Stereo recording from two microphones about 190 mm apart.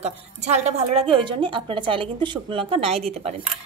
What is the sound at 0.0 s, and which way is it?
Speech, 35° right (ahead or behind).